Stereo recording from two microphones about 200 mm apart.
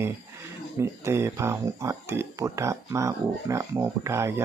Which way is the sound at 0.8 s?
15° right (ahead or behind).